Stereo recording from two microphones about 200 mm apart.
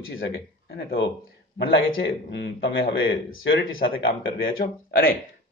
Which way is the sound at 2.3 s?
60° left (ahead or behind).